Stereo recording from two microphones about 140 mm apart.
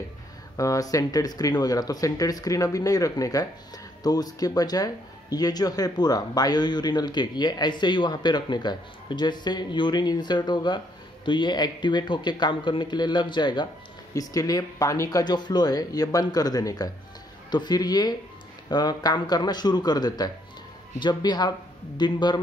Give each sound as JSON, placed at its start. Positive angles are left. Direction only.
{"t": 0.6, "sound": "speech", "side_deg": 25}